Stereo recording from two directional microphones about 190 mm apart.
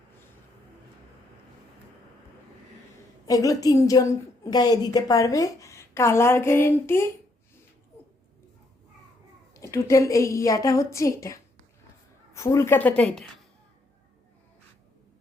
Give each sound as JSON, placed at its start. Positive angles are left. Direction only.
{"t": 3.2, "sound": "a woman's voice", "side_deg": 20}
{"t": 9.6, "sound": "a woman's voice", "side_deg": 15}